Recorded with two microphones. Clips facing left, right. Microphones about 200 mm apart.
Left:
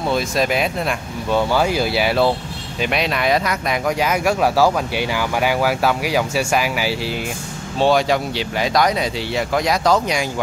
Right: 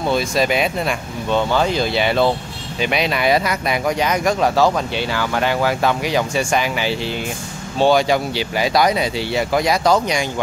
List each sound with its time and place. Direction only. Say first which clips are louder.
0.0 s speech: right 1 dB; centre (ahead or behind)